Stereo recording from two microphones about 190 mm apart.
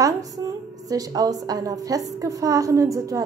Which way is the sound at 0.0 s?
20° right (ahead or behind).